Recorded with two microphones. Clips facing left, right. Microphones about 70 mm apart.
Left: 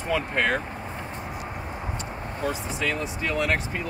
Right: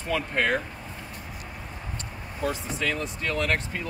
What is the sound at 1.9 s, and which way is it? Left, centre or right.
Speech, centre.